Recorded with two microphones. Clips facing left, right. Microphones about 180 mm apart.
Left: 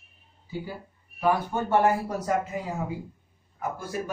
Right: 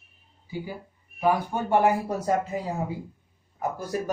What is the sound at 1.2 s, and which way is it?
Speech, 15° right (ahead or behind).